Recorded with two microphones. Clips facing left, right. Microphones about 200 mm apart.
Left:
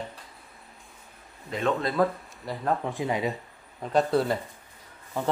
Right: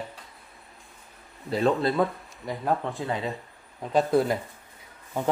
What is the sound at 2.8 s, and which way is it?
Speech, 15° left (ahead or behind).